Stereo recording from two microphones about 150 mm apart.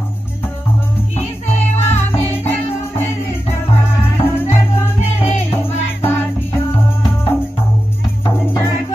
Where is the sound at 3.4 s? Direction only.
15° left (ahead or behind).